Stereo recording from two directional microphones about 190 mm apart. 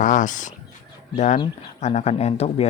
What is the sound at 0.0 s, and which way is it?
Speech, 40° left (ahead or behind).